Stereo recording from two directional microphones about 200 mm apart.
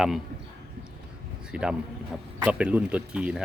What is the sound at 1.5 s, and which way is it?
Speech, 5° right (ahead or behind).